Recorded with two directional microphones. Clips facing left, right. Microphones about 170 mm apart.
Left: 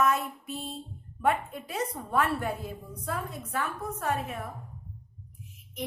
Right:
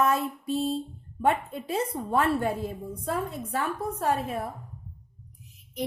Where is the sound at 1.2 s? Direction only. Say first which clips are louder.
Right 2 dB; 25° right (ahead or behind).